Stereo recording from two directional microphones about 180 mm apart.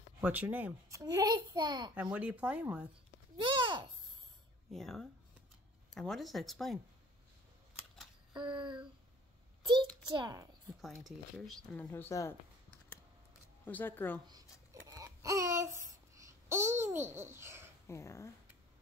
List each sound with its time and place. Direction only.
0.2 s a child's voice: 10° right (ahead or behind)
2.0 s speech: 10° right (ahead or behind)
3.5 s a sound: 25° right (ahead or behind)
4.7 s speech: centre (ahead or behind)
8.3 s a child's voice: 25° right (ahead or behind)
10.0 s a child's voice: 25° right (ahead or behind)
10.8 s speech: centre (ahead or behind)
13.7 s speech: 10° left (ahead or behind)
14.2 s babbling: 20° right (ahead or behind)
17.8 s speech: 15° left (ahead or behind)